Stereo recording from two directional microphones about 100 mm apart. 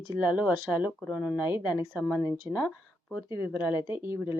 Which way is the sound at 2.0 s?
35° left (ahead or behind).